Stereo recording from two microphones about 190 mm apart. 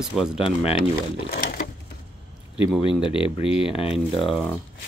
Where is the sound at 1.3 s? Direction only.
50° left (ahead or behind).